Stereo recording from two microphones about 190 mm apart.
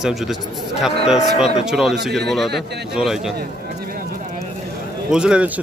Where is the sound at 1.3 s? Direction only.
35° left (ahead or behind).